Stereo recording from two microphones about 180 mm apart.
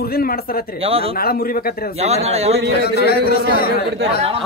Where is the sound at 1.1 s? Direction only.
55° left (ahead or behind).